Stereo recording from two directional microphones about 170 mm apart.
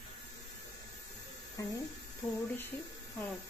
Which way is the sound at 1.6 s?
20° left (ahead or behind).